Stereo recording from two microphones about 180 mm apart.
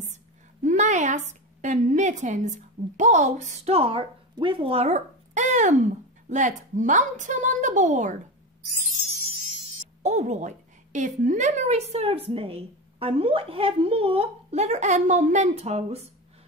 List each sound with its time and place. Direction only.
0.0 s a sound: 40° right (ahead or behind)
3.0 s a woman's voice: 40° right (ahead or behind)
10.0 s a woman's voice: 40° right (ahead or behind)